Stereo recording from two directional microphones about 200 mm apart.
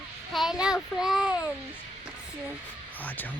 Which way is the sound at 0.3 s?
5° right (ahead or behind).